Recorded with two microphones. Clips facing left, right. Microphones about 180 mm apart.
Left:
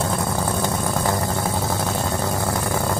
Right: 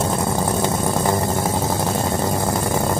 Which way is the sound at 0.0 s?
20° right (ahead or behind).